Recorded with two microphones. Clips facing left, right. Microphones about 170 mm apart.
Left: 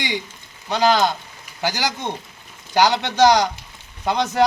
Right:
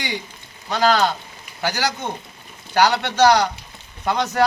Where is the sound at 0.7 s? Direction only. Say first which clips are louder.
Left 1 dB; 15° left (ahead or behind).